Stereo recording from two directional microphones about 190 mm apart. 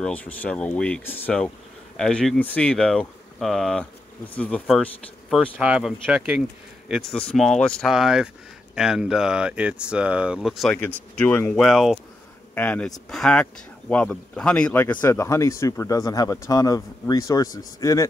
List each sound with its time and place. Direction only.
0.0 s speech: 10° left (ahead or behind)